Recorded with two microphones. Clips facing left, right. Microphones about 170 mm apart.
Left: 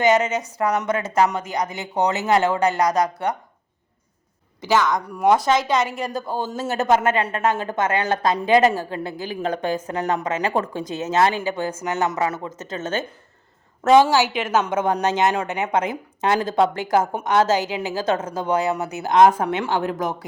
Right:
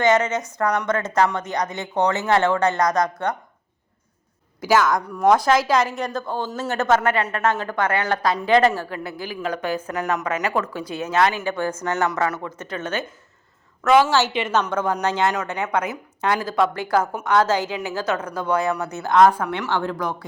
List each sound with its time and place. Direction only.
0.0 s speech: 15° left (ahead or behind)
4.6 s speech: 5° right (ahead or behind)
5.0 s a woman's voice: 10° left (ahead or behind); by 11.4 s 25° left (ahead or behind)
11.4 s speech: 15° left (ahead or behind)
14.1 s speech: 10° left (ahead or behind)
14.6 s a woman's voice: 20° left (ahead or behind)